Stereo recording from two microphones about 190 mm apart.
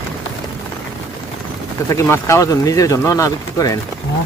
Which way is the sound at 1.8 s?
15° left (ahead or behind).